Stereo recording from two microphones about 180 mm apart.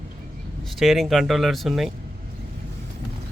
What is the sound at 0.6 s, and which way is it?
Speech, centre (ahead or behind).